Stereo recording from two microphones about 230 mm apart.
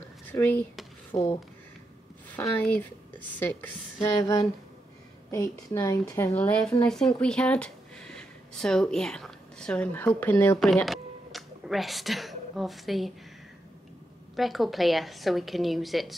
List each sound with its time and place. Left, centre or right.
0.3 s speech: centre
2.3 s speech: centre
4.2 s a woman's voice: centre
14.3 s a woman's voice: centre